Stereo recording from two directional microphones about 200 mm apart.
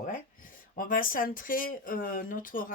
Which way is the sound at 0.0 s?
45° left (ahead or behind).